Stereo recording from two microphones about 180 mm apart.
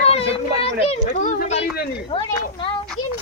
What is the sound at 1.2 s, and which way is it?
Speech, 50° left (ahead or behind).